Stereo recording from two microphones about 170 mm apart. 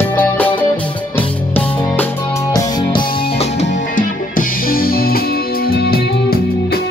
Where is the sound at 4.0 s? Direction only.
55° left (ahead or behind).